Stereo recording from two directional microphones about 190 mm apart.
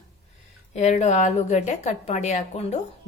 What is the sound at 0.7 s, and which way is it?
A woman's voice, 35° left (ahead or behind).